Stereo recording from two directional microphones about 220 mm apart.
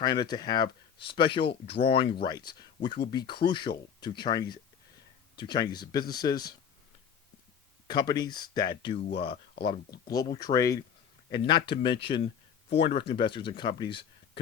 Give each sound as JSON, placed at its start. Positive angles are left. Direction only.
{"t": 0.0, "sound": "speech", "side_deg": 20}
{"t": 7.9, "sound": "speech", "side_deg": 20}